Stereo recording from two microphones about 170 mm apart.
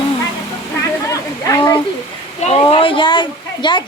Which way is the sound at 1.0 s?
20° left (ahead or behind).